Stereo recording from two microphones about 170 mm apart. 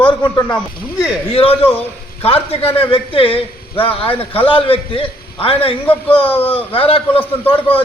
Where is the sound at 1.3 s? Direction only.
35° left (ahead or behind).